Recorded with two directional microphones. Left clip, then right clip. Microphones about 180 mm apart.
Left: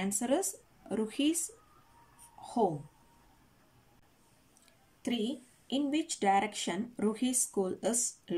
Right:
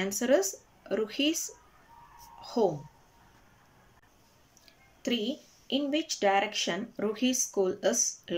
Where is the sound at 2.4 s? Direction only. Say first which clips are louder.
Right 3 dB; 20° left (ahead or behind).